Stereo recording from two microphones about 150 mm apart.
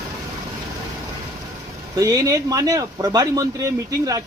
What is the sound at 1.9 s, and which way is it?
Speech, 25° right (ahead or behind).